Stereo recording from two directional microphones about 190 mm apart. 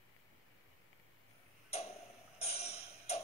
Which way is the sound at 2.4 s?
35° left (ahead or behind).